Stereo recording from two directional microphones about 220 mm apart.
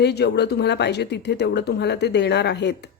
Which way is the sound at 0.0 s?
50° left (ahead or behind).